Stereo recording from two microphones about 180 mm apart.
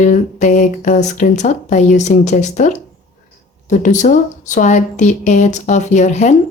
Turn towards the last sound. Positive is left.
turn(degrees=40)  # may be behind; listen again after turning